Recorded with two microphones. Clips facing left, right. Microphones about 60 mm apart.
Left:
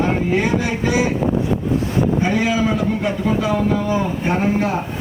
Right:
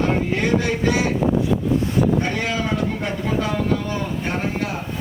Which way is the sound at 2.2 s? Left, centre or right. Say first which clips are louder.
Left 5 dB; centre.